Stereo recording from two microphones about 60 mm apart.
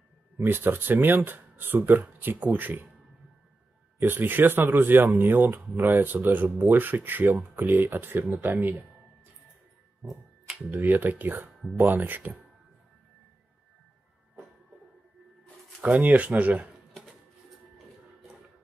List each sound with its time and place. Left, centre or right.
0.4 s speech: right
4.0 s speech: right
10.0 s a sound: centre
10.7 s speech: right
15.8 s speech: right